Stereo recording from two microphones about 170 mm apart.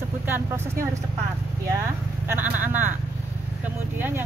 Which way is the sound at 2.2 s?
10° right (ahead or behind).